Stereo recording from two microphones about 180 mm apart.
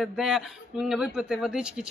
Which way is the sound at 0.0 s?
Centre (ahead or behind).